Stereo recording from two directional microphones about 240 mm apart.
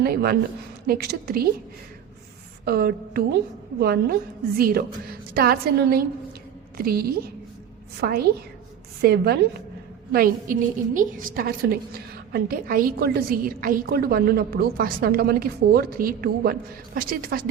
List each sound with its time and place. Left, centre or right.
0.0 s a woman's voice: right
2.6 s a woman's voice: right